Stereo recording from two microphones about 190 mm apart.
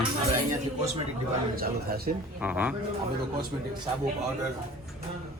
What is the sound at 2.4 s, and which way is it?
Speech, 5° right (ahead or behind).